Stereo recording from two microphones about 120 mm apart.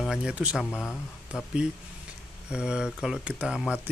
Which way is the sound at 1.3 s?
10° right (ahead or behind).